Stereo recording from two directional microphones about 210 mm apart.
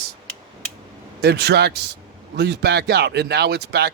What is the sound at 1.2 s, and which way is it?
Speech, 50° right (ahead or behind).